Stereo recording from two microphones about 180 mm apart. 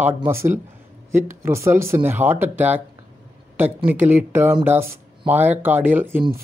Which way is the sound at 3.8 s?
10° right (ahead or behind).